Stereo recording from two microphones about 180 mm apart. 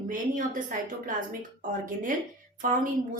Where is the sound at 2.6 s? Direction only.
50° right (ahead or behind).